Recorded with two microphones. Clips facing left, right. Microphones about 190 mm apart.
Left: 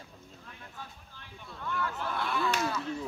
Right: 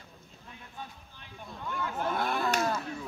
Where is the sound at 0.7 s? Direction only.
20° right (ahead or behind).